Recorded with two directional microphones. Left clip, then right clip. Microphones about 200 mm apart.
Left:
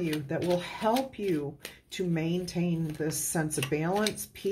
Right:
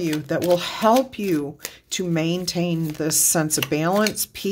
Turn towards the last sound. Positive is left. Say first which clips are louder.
# right 8 dB
turn(degrees=-40)  # may be behind; listen again after turning